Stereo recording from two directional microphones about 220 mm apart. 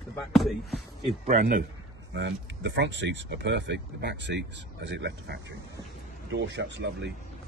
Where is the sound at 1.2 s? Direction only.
35° right (ahead or behind).